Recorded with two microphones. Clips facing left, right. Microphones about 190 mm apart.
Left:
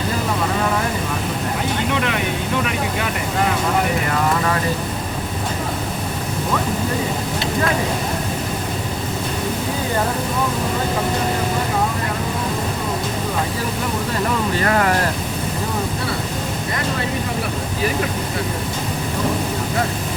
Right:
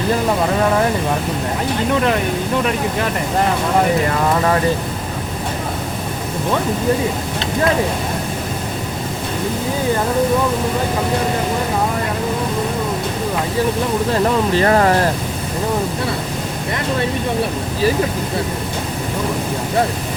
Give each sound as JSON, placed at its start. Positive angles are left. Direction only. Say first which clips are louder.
{"t": 14.6, "sound": "speech", "louder": "right 4 dB", "side_deg": -30}